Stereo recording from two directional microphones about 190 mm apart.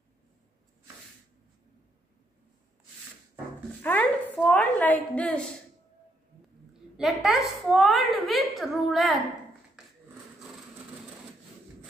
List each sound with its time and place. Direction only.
3.8 s a woman's voice: 5° left (ahead or behind)
7.2 s a child's voice: centre (ahead or behind)